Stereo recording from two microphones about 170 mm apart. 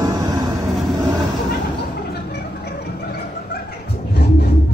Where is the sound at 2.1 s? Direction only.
75° left (ahead or behind).